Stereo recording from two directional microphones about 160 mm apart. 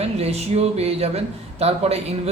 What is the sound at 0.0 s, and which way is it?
Speech, 40° right (ahead or behind).